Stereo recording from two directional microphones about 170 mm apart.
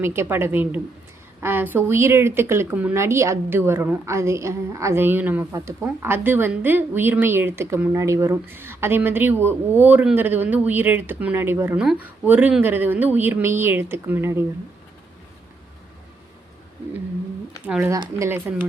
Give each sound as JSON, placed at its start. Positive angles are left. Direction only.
{"t": 0.0, "sound": "speech", "side_deg": -15}
{"t": 17.7, "sound": "speech", "side_deg": -15}